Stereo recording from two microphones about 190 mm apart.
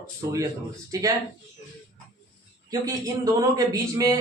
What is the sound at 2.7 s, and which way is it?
A man's voice, 20° right (ahead or behind).